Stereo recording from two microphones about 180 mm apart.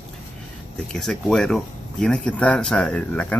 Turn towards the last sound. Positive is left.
turn(degrees=5)  # may be behind; listen again after turning